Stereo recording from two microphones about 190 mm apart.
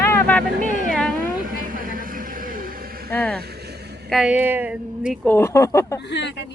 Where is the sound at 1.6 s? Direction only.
45° right (ahead or behind).